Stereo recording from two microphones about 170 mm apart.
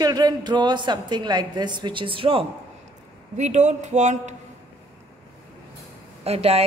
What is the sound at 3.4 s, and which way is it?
Speech, 45° right (ahead or behind).